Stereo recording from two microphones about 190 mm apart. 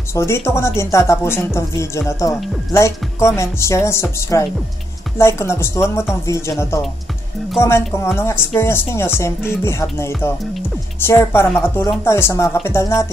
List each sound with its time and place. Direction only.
0.1 s speech: 15° left (ahead or behind)
8.0 s speech: 15° left (ahead or behind)